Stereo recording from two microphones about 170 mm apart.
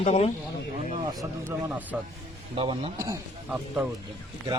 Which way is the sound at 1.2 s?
10° right (ahead or behind).